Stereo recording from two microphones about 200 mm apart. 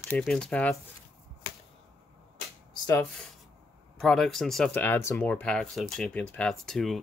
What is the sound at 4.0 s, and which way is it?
Speech, centre (ahead or behind).